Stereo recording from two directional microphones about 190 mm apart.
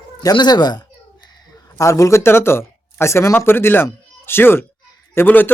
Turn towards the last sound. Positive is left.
turn(degrees=10)  # may be behind; listen again after turning